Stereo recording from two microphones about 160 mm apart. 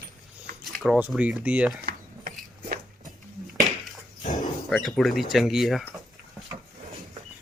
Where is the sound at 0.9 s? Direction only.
10° right (ahead or behind).